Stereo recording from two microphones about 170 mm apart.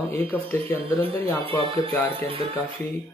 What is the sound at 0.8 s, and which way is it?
Speech, 35° right (ahead or behind).